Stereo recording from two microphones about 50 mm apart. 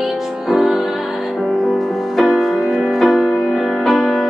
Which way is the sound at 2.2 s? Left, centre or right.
Centre.